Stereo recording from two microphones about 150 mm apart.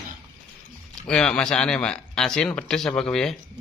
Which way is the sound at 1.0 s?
5° left (ahead or behind).